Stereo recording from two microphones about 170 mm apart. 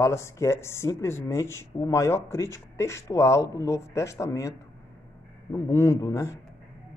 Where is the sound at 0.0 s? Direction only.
15° left (ahead or behind).